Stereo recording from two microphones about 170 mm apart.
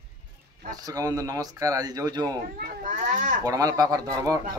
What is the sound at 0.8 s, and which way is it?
Speech, 20° right (ahead or behind).